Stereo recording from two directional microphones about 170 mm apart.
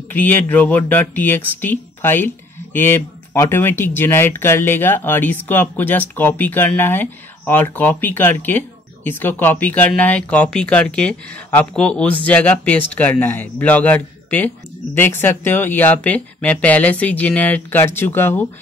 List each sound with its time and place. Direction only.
0.1 s speech: 10° left (ahead or behind)